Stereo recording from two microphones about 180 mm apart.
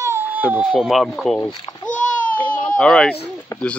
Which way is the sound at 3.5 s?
20° left (ahead or behind).